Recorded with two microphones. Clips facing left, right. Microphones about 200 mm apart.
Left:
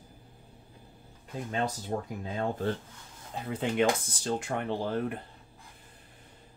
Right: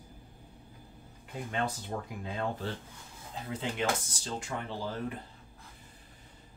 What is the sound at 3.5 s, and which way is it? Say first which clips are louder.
Speech: left 6 dB; 55° left (ahead or behind).